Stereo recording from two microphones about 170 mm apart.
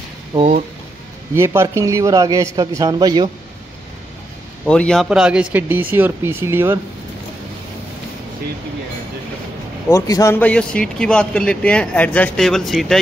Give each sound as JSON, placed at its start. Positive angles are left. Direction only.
{"t": 0.3, "sound": "speech", "side_deg": -35}
{"t": 1.3, "sound": "a man's voice", "side_deg": -15}
{"t": 4.6, "sound": "speech", "side_deg": 5}
{"t": 9.8, "sound": "a man's voice", "side_deg": 20}
{"t": 10.4, "sound": "speech", "side_deg": 5}